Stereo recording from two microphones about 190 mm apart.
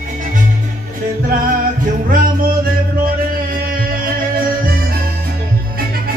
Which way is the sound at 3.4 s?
50° right (ahead or behind).